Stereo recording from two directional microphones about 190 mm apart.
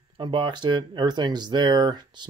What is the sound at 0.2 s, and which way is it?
Speech, 25° right (ahead or behind).